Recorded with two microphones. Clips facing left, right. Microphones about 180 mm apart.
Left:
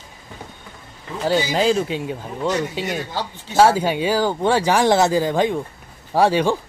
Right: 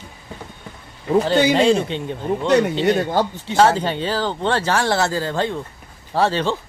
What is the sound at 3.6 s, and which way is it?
A man's voice, 10° left (ahead or behind).